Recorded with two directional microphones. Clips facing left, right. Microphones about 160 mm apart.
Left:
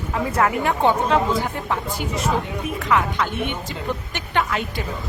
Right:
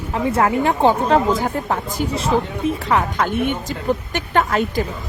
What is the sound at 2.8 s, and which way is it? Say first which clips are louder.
Speech: left 1 dB; 40° right (ahead or behind).